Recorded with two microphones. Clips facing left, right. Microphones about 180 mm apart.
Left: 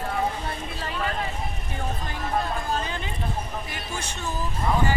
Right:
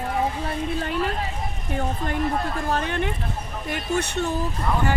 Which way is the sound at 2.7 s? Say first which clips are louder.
Right 5 dB; 65° right (ahead or behind).